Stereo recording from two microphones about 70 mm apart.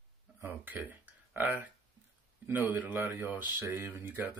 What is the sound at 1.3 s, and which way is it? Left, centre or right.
Speech, right.